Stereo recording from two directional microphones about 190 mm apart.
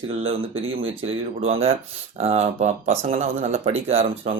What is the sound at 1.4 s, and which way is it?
Speech, 30° right (ahead or behind).